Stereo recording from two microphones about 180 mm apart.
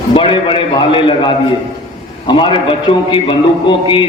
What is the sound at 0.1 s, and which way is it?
A man's voice, 30° left (ahead or behind).